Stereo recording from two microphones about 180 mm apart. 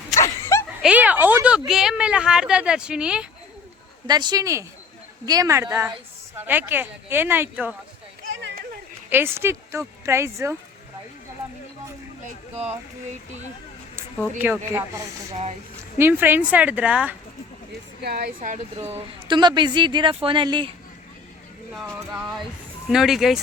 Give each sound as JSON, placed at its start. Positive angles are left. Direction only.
{"t": 0.2, "sound": "a sound", "side_deg": 15}
{"t": 0.8, "sound": "speech", "side_deg": -5}
{"t": 4.0, "sound": "speech", "side_deg": -25}
{"t": 8.4, "sound": "a sound", "side_deg": -75}
{"t": 9.0, "sound": "speech", "side_deg": -10}
{"t": 14.3, "sound": "speech", "side_deg": -10}
{"t": 18.0, "sound": "speech", "side_deg": -60}
{"t": 18.4, "sound": "speech", "side_deg": -40}
{"t": 18.9, "sound": "speech", "side_deg": -25}
{"t": 21.7, "sound": "a sound", "side_deg": 0}